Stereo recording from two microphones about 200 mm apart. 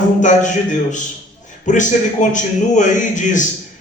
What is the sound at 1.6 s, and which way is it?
A man's voice, 40° left (ahead or behind).